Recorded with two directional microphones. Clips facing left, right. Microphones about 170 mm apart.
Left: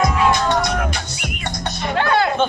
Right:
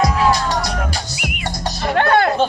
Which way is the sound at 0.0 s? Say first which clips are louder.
Right 1 dB; 35° right (ahead or behind).